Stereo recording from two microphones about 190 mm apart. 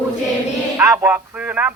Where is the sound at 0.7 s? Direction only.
15° right (ahead or behind).